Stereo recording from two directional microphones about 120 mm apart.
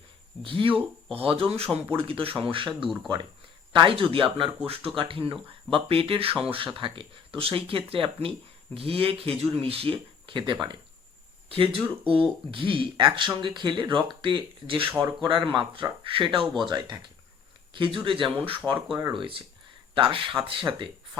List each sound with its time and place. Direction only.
0.4 s speech: 45° right (ahead or behind)
18.6 s speech: 5° left (ahead or behind)
19.9 s speech: 45° right (ahead or behind)